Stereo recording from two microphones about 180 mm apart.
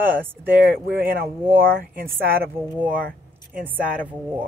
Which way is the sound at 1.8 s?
50° right (ahead or behind).